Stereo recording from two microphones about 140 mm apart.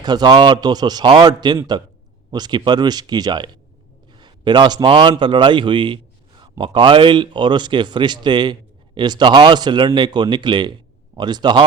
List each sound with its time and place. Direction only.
0.0 s a man's voice: 30° right (ahead or behind)